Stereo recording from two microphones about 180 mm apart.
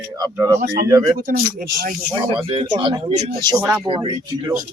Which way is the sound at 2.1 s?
30° right (ahead or behind).